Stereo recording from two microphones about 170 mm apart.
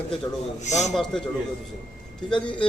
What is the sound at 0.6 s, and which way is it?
Speech, 45° left (ahead or behind).